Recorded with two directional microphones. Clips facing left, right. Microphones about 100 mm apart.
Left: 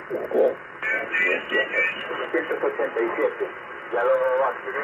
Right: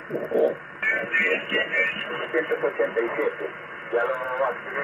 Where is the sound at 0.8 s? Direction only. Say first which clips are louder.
Right 1 dB; 25° left (ahead or behind).